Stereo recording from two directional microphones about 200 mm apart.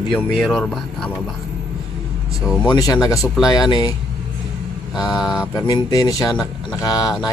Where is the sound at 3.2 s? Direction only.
Centre (ahead or behind).